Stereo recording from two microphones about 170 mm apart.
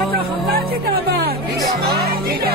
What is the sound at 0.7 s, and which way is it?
Music, 65° right (ahead or behind).